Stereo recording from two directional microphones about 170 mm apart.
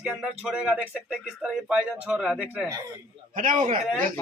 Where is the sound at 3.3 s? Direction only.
50° right (ahead or behind).